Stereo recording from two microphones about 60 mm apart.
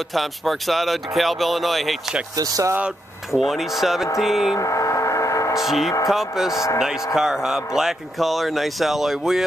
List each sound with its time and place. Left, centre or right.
0.1 s speech: centre
2.3 s speech: right
3.3 s speech: centre
4.6 s gong: left
5.5 s speech: centre